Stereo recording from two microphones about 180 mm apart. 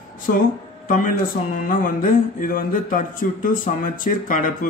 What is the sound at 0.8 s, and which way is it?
Speech, 50° left (ahead or behind).